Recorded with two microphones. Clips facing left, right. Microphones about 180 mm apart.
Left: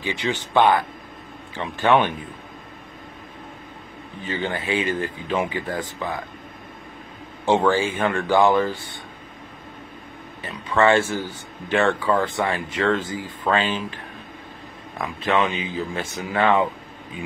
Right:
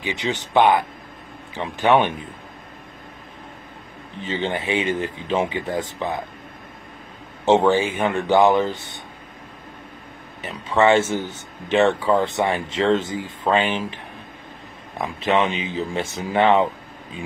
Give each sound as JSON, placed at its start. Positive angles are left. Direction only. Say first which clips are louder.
{"t": 0.0, "sound": "a man's voice", "louder": "even", "side_deg": -20}
{"t": 4.3, "sound": "speech", "louder": "right 2 dB", "side_deg": -25}
{"t": 7.4, "sound": "speech", "louder": "right 3 dB", "side_deg": -25}
{"t": 10.4, "sound": "speech", "louder": "right 1 dB", "side_deg": -20}
{"t": 15.0, "sound": "speech", "louder": "right 2 dB", "side_deg": -25}